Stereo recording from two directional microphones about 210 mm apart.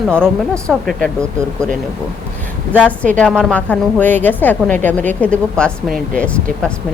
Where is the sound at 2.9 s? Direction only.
5° left (ahead or behind).